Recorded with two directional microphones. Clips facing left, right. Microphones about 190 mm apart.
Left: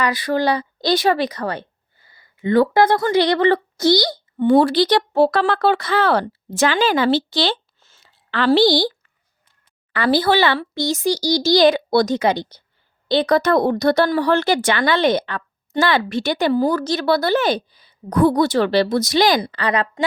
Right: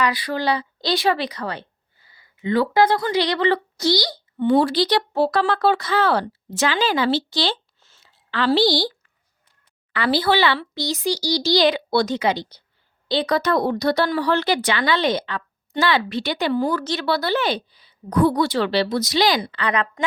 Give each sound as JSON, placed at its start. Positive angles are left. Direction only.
{"t": 0.0, "sound": "a woman's voice", "side_deg": 45}
{"t": 9.9, "sound": "a woman's voice", "side_deg": 45}